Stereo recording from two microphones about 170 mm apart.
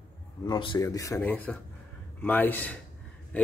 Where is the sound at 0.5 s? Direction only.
25° left (ahead or behind).